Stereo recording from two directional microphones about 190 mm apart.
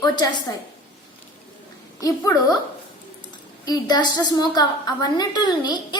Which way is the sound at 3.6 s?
20° left (ahead or behind).